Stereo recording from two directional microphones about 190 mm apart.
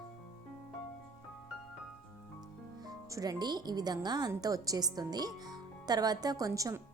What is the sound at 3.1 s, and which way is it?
Speech, 20° right (ahead or behind).